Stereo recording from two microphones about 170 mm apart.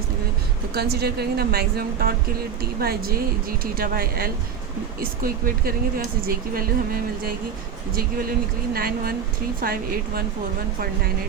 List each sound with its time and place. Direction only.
0.7 s speech: 70° right (ahead or behind)